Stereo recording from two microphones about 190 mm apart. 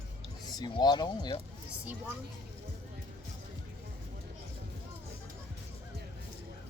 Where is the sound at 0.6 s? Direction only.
25° left (ahead or behind).